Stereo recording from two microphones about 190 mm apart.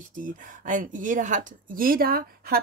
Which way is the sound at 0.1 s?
45° right (ahead or behind).